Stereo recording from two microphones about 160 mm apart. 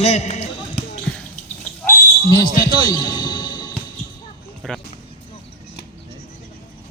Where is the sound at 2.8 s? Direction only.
30° left (ahead or behind).